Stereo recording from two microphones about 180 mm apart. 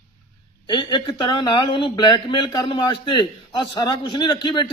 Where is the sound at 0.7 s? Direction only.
25° left (ahead or behind).